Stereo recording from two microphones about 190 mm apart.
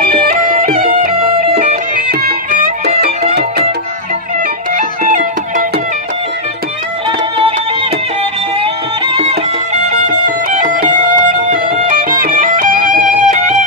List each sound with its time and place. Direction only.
0.0 s music: 45° right (ahead or behind)
1.5 s music: 35° right (ahead or behind)
2.0 s music: 50° right (ahead or behind)
4.7 s music: 40° right (ahead or behind)
7.1 s music: 30° right (ahead or behind)
9.0 s music: 30° right (ahead or behind)
9.9 s music: 40° right (ahead or behind)